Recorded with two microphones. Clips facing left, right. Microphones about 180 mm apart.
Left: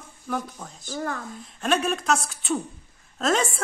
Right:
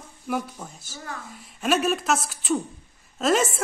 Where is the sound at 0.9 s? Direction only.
55° left (ahead or behind).